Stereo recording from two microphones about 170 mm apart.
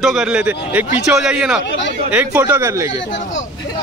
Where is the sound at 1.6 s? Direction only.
90° left.